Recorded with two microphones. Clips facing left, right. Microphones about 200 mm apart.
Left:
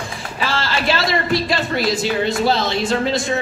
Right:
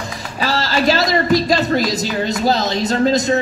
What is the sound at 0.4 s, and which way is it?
A woman's voice, 40° right (ahead or behind).